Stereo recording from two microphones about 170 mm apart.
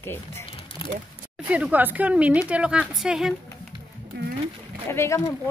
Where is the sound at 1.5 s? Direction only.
10° right (ahead or behind).